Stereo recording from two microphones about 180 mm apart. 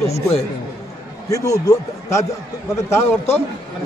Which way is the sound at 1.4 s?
20° left (ahead or behind).